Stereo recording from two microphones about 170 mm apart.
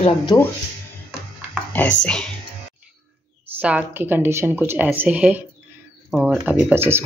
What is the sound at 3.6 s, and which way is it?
Speech, 10° right (ahead or behind).